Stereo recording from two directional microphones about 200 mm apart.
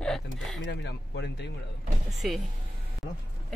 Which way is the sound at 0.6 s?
60° left (ahead or behind).